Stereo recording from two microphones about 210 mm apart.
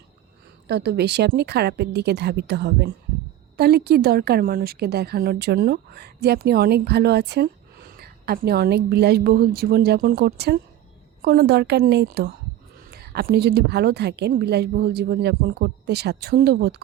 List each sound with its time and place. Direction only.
0.7 s a woman's voice: 50° right (ahead or behind)